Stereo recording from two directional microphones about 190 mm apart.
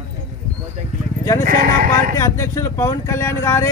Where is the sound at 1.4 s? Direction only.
45° right (ahead or behind).